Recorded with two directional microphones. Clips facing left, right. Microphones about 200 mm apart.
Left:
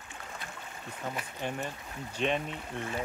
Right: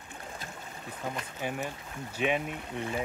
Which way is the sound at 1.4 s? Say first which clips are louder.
Right 1 dB; 5° right (ahead or behind).